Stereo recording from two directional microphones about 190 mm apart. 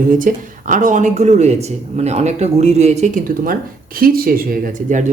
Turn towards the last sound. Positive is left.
turn(degrees=-40)  # may be behind; listen again after turning